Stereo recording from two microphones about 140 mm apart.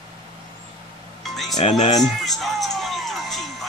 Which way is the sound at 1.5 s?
50° left (ahead or behind).